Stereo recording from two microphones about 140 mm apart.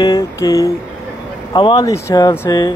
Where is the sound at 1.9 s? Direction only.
25° left (ahead or behind).